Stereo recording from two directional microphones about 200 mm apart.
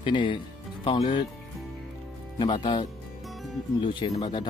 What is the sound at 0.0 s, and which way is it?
Speech, 25° left (ahead or behind).